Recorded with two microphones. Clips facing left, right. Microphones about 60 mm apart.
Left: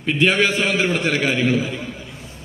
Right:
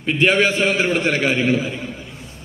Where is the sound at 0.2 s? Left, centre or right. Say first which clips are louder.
Right 2 dB; right.